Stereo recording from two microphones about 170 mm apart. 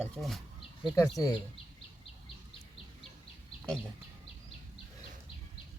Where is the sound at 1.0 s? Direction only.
20° left (ahead or behind).